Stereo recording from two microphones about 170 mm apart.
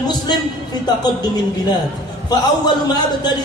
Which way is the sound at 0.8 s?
25° left (ahead or behind).